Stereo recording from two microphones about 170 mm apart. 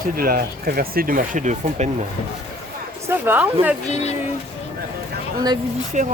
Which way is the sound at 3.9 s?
40° left (ahead or behind).